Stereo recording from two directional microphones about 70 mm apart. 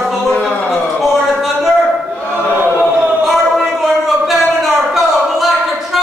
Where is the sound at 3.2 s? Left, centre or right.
Centre.